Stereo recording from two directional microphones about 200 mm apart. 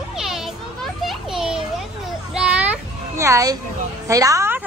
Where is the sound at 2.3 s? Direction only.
5° right (ahead or behind).